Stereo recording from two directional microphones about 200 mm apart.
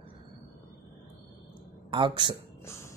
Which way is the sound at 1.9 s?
25° right (ahead or behind).